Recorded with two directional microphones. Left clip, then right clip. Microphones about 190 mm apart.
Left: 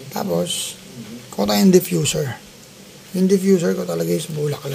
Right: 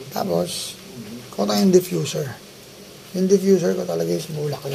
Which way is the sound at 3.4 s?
35° left (ahead or behind).